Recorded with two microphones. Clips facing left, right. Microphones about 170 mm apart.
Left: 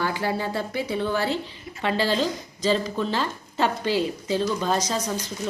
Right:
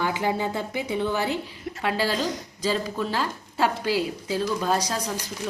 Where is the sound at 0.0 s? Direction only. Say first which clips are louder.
Right 1 dB; 15° right (ahead or behind).